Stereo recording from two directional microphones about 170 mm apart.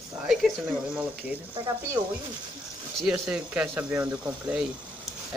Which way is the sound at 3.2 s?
5° right (ahead or behind).